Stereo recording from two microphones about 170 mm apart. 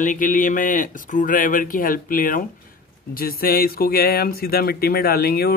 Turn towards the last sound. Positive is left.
turn(degrees=65)  # may be behind; listen again after turning